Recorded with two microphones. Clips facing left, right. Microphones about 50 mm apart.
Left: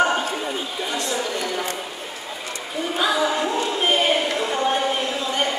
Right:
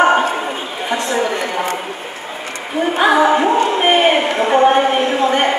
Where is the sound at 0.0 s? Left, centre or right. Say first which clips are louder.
Right 8 dB; right.